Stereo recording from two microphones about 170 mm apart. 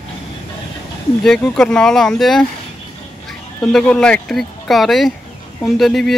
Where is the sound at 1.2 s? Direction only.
5° left (ahead or behind).